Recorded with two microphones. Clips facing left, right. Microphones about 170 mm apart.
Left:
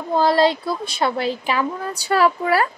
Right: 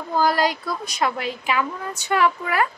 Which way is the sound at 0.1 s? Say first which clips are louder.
Left 4 dB; 25° left (ahead or behind).